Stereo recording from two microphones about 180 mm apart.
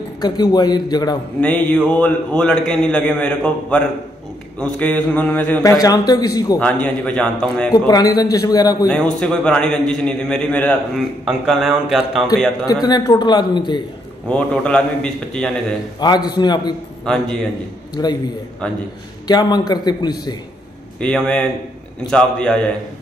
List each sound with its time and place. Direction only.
0.2 s a man's voice: 20° left (ahead or behind)
1.4 s a man's voice: 10° left (ahead or behind)
6.6 s a man's voice: 5° left (ahead or behind)
7.7 s a man's voice: 20° left (ahead or behind)
8.8 s a man's voice: 5° left (ahead or behind)
12.8 s a man's voice: 20° left (ahead or behind)
14.3 s a man's voice: 5° left (ahead or behind)
16.0 s a man's voice: 25° left (ahead or behind)
17.0 s a man's voice: 5° left (ahead or behind)
18.0 s a man's voice: 25° left (ahead or behind)
19.2 s a man's voice: 20° left (ahead or behind)
21.0 s a man's voice: 5° left (ahead or behind)